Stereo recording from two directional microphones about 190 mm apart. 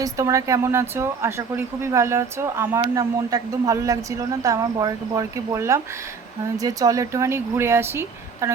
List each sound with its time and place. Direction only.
0.0 s speech: 15° right (ahead or behind)